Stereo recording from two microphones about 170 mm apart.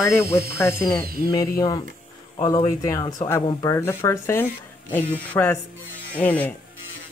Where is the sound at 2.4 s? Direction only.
20° left (ahead or behind).